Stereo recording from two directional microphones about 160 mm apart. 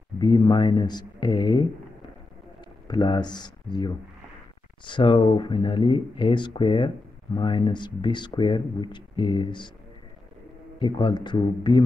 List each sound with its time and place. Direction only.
0.2 s speech: 30° left (ahead or behind)
2.9 s speech: 30° left (ahead or behind)
10.8 s speech: 30° left (ahead or behind)